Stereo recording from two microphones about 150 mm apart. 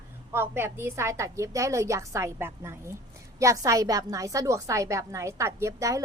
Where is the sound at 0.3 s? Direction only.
15° right (ahead or behind).